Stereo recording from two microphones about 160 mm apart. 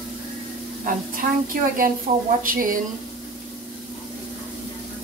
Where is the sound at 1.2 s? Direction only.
60° right (ahead or behind).